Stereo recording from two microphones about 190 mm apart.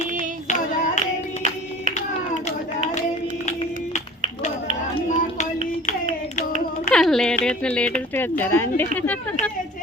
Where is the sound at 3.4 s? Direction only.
35° left (ahead or behind).